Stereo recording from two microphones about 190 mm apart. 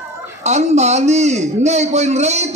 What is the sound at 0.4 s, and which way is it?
Speech, 35° right (ahead or behind).